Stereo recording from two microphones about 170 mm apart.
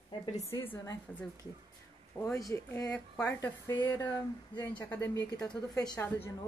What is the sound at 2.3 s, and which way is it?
Speech, 20° left (ahead or behind).